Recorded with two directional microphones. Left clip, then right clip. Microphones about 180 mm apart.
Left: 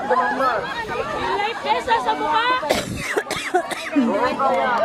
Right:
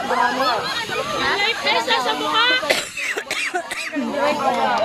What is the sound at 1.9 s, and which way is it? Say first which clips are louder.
Speech: even; 55° left (ahead or behind).